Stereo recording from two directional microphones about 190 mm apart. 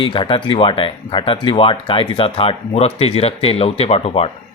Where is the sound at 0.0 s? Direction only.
25° left (ahead or behind).